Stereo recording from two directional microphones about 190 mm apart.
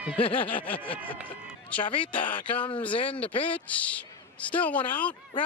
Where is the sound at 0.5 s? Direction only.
10° left (ahead or behind).